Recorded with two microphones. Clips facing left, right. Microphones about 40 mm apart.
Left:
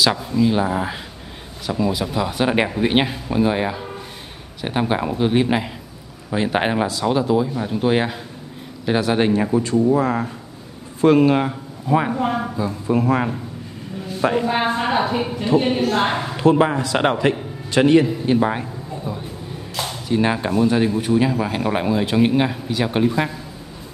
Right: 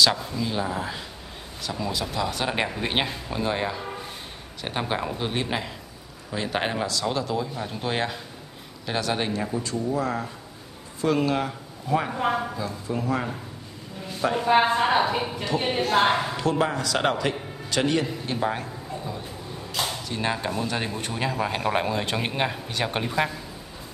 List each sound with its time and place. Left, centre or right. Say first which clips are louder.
0.0 s a man's voice: left 5 dB; centre
12.8 s a man's voice: left 9 dB; left
14.6 s speech: left 1 dB; centre
16.3 s a man's voice: left 8 dB; left
20.7 s speech: left 11 dB; centre